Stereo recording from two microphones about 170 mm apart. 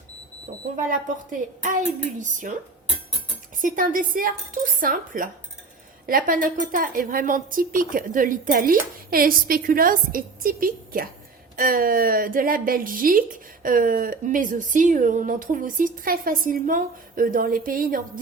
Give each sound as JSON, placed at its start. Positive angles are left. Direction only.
{"t": 0.8, "sound": "speech", "side_deg": -50}
{"t": 3.6, "sound": "a woman's voice", "side_deg": -55}